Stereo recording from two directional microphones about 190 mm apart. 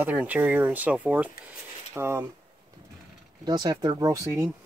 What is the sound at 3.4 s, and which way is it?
Speech, 20° right (ahead or behind).